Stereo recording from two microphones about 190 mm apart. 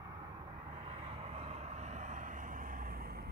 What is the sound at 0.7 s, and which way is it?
Vehicle, 30° right (ahead or behind).